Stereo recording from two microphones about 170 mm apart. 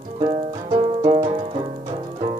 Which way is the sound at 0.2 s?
30° right (ahead or behind).